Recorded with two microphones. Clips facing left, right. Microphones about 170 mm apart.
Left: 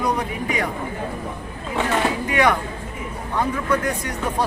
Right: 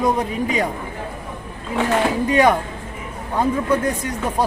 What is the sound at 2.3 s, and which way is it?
Speech, 25° right (ahead or behind).